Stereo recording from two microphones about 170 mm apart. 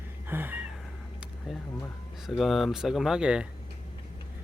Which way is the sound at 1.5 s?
Centre (ahead or behind).